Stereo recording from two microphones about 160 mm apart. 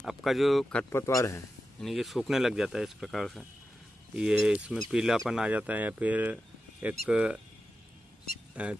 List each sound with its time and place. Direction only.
0.0 s speech: centre (ahead or behind)
0.9 s a man's voice: 20° left (ahead or behind)
1.8 s speech: centre (ahead or behind)
8.6 s speech: 10° right (ahead or behind)